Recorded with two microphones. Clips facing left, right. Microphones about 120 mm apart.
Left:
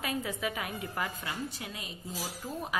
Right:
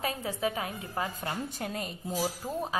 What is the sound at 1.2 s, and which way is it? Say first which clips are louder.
Speech: right 4 dB; 45° right (ahead or behind).